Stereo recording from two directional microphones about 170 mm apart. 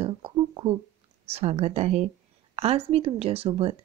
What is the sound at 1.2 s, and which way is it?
A woman's voice, 35° right (ahead or behind).